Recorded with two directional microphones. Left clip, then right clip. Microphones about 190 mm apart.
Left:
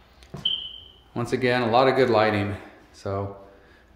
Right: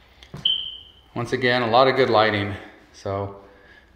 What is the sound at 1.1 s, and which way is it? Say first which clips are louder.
Speech: right 2 dB; 15° left (ahead or behind).